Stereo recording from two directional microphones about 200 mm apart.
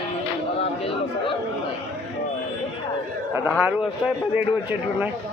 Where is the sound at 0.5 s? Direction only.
30° left (ahead or behind).